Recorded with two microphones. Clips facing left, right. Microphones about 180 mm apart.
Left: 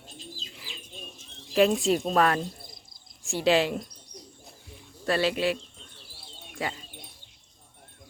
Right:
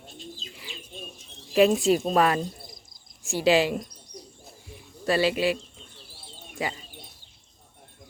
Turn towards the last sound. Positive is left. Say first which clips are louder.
# right 2 dB
turn(degrees=0)  # may be behind; listen again after turning